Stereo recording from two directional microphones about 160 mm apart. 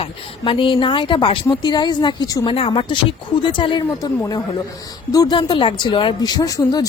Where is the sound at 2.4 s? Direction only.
35° left (ahead or behind).